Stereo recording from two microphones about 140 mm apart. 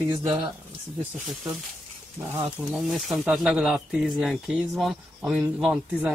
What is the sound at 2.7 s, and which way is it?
Speech, centre (ahead or behind).